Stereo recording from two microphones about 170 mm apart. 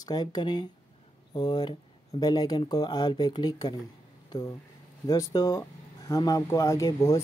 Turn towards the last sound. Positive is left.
turn(degrees=20)  # may be behind; listen again after turning